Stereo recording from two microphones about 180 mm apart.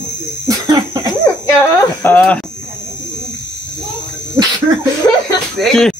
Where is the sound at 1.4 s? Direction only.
15° left (ahead or behind).